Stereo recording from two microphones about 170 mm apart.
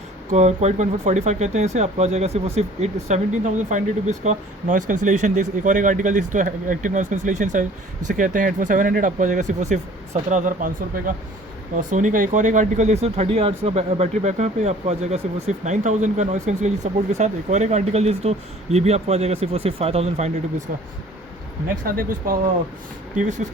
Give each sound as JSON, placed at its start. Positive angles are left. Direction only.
{"t": 0.3, "sound": "speech", "side_deg": -45}
{"t": 21.8, "sound": "speech", "side_deg": -55}